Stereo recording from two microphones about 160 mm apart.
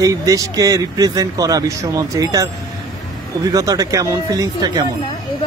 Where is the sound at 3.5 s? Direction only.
20° right (ahead or behind).